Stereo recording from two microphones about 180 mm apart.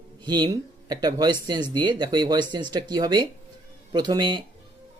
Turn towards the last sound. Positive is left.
turn(degrees=-25)  # may be behind; listen again after turning